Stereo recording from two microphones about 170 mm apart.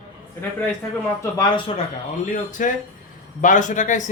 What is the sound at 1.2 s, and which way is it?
Speech, 25° left (ahead or behind).